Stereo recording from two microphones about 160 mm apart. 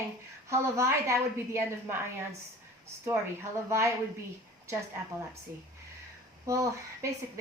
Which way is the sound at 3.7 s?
15° right (ahead or behind).